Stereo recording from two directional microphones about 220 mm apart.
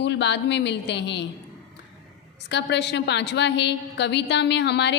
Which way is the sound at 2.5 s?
50° left (ahead or behind).